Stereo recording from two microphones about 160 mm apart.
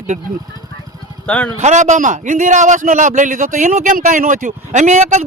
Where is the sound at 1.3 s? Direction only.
5° left (ahead or behind).